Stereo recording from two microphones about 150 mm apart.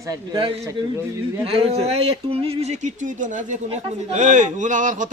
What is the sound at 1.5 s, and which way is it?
A man's voice, 40° right (ahead or behind).